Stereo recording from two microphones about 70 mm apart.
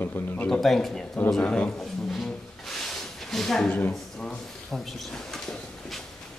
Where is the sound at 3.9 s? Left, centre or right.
Centre.